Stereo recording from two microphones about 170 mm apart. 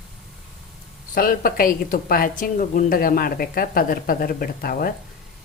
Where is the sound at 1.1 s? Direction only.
60° left (ahead or behind).